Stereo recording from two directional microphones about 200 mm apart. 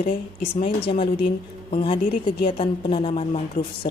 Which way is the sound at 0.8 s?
25° left (ahead or behind).